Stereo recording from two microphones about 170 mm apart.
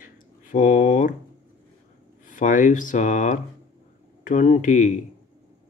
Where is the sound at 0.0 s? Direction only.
50° left (ahead or behind).